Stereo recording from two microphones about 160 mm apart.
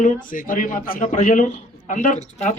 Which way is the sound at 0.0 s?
60° left (ahead or behind).